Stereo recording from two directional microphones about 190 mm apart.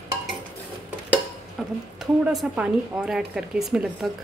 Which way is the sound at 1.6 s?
Centre (ahead or behind).